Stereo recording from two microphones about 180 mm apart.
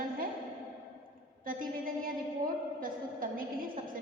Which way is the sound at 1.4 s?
50° right (ahead or behind).